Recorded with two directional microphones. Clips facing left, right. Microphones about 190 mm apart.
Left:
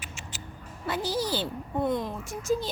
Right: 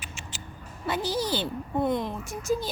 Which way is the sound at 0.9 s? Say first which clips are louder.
Right 1 dB; 20° right (ahead or behind).